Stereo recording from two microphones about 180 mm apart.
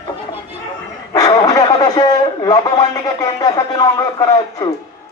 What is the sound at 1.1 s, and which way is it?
A man's voice, 20° left (ahead or behind).